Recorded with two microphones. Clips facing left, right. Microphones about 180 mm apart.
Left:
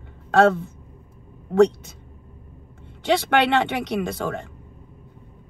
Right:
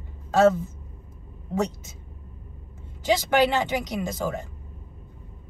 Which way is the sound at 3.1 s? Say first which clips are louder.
Left 2 dB; 65° left (ahead or behind).